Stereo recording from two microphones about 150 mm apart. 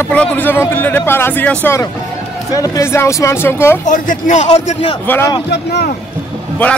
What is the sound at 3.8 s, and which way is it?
Speech, 55° left (ahead or behind).